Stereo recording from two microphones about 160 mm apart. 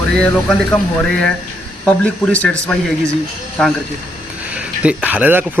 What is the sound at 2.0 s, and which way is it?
Speech, 10° left (ahead or behind).